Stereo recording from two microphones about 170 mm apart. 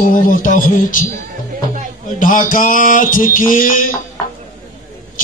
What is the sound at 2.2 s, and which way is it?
Speech, 50° left (ahead or behind).